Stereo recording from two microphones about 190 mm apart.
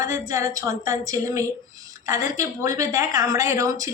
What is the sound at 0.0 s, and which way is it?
A woman's voice, 15° right (ahead or behind).